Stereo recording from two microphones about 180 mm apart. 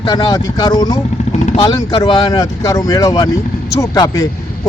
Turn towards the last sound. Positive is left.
turn(degrees=20)  # may be behind; listen again after turning